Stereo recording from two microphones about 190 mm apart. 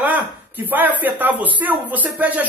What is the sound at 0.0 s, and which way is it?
A man's voice, 10° right (ahead or behind).